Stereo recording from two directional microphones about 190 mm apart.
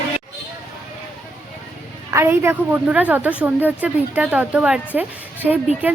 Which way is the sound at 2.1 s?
15° right (ahead or behind).